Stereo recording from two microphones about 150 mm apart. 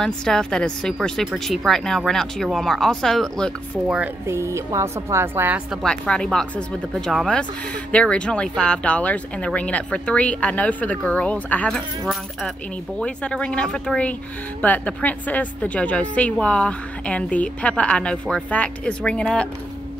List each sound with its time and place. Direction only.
0.0 s speech: 5° left (ahead or behind)
4.3 s a woman's voice: 20° right (ahead or behind)
5.8 s speech: 5° left (ahead or behind)
13.0 s speech: 5° left (ahead or behind)